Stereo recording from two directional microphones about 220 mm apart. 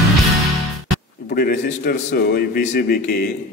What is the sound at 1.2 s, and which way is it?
A man's voice, 40° left (ahead or behind).